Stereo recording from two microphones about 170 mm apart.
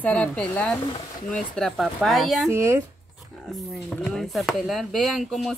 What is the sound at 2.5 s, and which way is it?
Speech, 15° right (ahead or behind).